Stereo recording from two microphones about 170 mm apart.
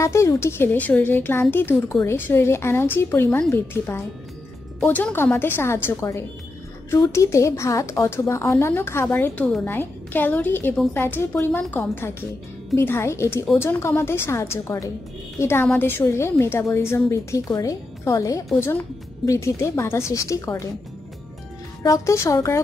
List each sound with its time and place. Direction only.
0.0 s speech: 15° left (ahead or behind)
21.8 s speech: 20° left (ahead or behind)